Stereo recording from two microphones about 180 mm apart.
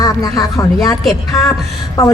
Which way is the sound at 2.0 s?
20° left (ahead or behind).